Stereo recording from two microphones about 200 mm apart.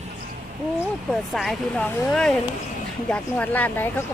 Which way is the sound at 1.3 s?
Centre (ahead or behind).